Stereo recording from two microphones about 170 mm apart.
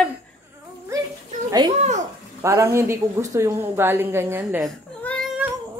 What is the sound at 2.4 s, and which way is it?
A woman's voice, 15° right (ahead or behind).